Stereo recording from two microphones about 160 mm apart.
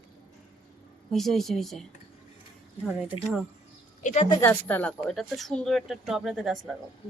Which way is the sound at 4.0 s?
50° left (ahead or behind).